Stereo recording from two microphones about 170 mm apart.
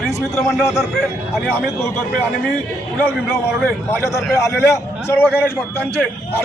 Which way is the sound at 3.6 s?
10° left (ahead or behind).